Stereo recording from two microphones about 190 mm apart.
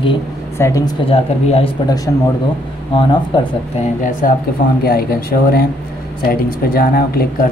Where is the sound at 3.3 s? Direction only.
25° left (ahead or behind).